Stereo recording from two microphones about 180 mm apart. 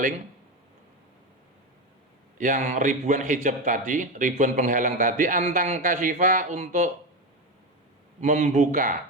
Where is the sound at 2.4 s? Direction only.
45° right (ahead or behind).